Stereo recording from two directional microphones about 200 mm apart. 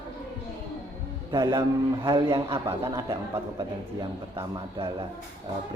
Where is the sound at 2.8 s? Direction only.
15° right (ahead or behind).